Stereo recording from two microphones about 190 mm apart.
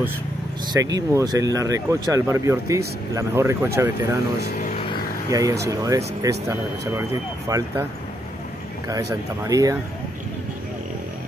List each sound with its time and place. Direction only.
0.7 s speech: 20° right (ahead or behind)
4.4 s speech: 50° left (ahead or behind)
5.3 s speech: 15° right (ahead or behind)
8.8 s speech: 20° right (ahead or behind)